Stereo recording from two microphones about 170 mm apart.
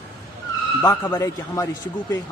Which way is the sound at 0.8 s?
20° left (ahead or behind).